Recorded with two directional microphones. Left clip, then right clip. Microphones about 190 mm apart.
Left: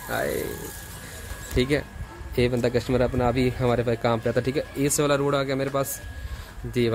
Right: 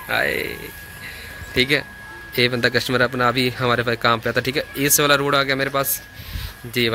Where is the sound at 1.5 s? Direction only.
10° left (ahead or behind).